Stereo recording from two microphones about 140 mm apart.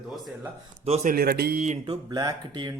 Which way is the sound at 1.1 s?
90° right.